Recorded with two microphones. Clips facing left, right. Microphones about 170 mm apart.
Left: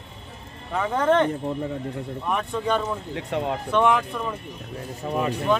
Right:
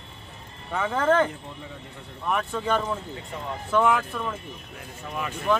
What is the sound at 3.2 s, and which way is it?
Speech, 75° left (ahead or behind).